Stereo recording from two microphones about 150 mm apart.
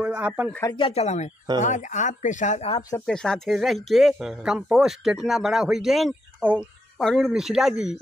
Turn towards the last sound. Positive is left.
turn(degrees=-5)  # may be behind; listen again after turning